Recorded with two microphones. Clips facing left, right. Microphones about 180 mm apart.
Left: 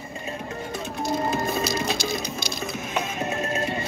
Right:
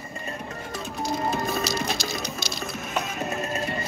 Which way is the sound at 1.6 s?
55° left (ahead or behind).